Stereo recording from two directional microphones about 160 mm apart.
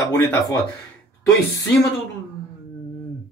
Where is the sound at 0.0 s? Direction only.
20° left (ahead or behind).